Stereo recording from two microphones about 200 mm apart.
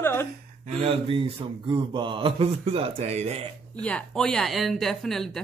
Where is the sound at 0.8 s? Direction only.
30° right (ahead or behind).